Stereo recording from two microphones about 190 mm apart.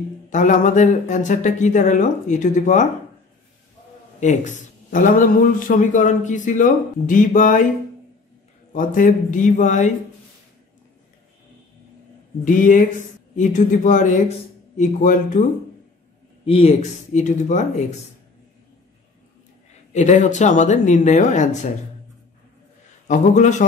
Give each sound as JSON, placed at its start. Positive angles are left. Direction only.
{"t": 0.3, "sound": "speech", "side_deg": 40}
{"t": 4.2, "sound": "a man's voice", "side_deg": 40}
{"t": 8.7, "sound": "speech", "side_deg": 45}
{"t": 12.4, "sound": "a man's voice", "side_deg": 45}
{"t": 16.4, "sound": "speech", "side_deg": 30}
{"t": 19.7, "sound": "speech", "side_deg": 40}
{"t": 23.0, "sound": "speech", "side_deg": 40}